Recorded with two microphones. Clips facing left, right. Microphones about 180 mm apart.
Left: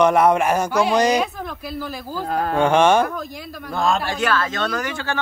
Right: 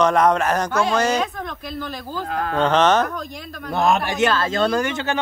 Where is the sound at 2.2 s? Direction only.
40° left (ahead or behind).